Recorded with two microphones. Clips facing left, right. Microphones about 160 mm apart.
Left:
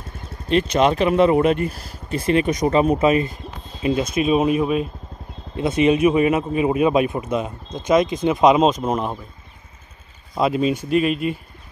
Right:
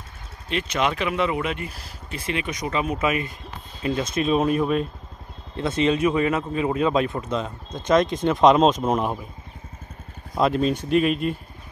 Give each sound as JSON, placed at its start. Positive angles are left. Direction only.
{"t": 0.5, "sound": "speech", "side_deg": 40}
{"t": 3.8, "sound": "a man's voice", "side_deg": 15}
{"t": 10.3, "sound": "speech", "side_deg": 5}